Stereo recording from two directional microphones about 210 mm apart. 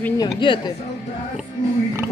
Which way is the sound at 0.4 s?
25° left (ahead or behind).